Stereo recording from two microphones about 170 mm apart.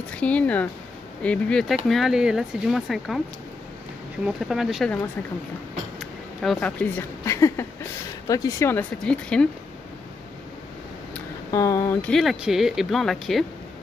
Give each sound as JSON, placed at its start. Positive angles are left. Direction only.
{"t": 0.1, "sound": "speech", "side_deg": 10}
{"t": 4.5, "sound": "speech", "side_deg": 0}
{"t": 5.9, "sound": "speech", "side_deg": 0}
{"t": 11.5, "sound": "speech", "side_deg": 20}
{"t": 12.1, "sound": "speech", "side_deg": 0}